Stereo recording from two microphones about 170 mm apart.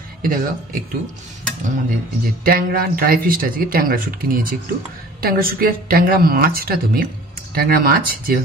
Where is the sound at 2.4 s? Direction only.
60° right (ahead or behind).